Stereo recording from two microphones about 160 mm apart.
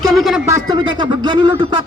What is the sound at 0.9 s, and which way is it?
Speech, 30° right (ahead or behind).